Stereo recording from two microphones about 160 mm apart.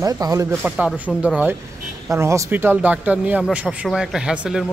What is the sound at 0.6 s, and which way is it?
Speech, 5° right (ahead or behind).